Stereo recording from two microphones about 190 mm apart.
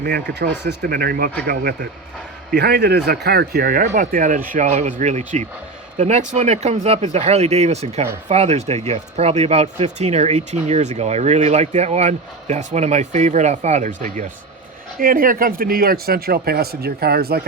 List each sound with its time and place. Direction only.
0.0 s a man's voice: 55° right (ahead or behind)